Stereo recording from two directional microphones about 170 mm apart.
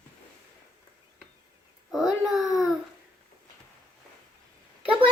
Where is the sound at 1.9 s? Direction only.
Centre (ahead or behind).